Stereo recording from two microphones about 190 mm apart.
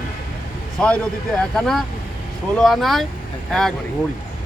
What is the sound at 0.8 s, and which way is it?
Speech, 5° left (ahead or behind).